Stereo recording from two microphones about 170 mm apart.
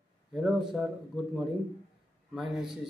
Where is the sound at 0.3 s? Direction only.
Centre (ahead or behind).